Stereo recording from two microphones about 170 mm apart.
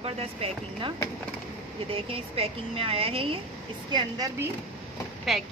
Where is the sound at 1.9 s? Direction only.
35° right (ahead or behind).